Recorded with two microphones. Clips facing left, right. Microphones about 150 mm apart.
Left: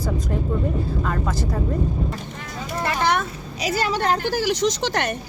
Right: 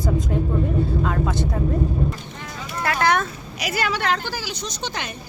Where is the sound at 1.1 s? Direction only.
Centre (ahead or behind).